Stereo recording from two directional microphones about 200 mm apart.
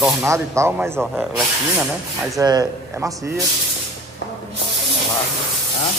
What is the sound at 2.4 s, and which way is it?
Speech, 20° right (ahead or behind).